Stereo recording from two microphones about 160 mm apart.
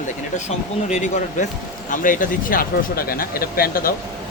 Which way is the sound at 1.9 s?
55° left (ahead or behind).